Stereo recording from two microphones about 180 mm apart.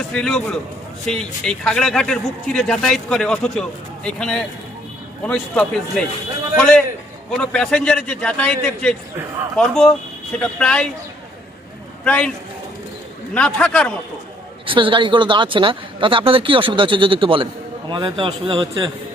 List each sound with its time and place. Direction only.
0.1 s speech: 5° left (ahead or behind)
7.3 s speech: 5° left (ahead or behind)
12.0 s a man's voice: 5° left (ahead or behind)
13.3 s speech: 5° left (ahead or behind)
14.7 s speech: 30° right (ahead or behind)